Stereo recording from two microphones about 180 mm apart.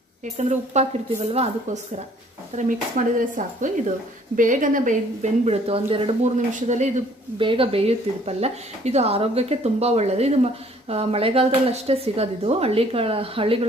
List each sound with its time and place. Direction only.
0.2 s speech: 40° right (ahead or behind)
6.3 s speech: 40° right (ahead or behind)
7.3 s speech: 30° right (ahead or behind)